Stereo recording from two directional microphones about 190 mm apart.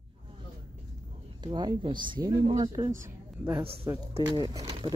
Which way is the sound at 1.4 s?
20° right (ahead or behind).